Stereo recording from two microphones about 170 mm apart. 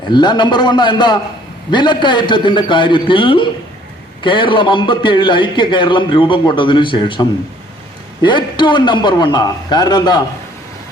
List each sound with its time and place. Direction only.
0.1 s a man's voice: 25° left (ahead or behind)